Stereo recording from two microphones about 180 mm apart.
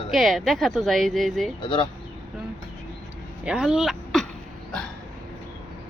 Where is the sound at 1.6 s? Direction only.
25° left (ahead or behind).